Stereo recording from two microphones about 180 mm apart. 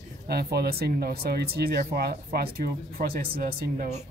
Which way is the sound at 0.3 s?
60° right (ahead or behind).